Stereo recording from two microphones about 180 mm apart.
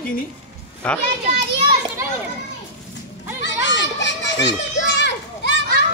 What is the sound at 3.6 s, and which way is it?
Children playing, 85° left.